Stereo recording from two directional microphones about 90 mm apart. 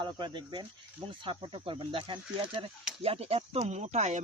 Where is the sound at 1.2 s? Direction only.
70° right (ahead or behind).